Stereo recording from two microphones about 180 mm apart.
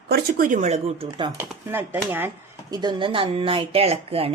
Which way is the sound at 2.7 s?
25° right (ahead or behind).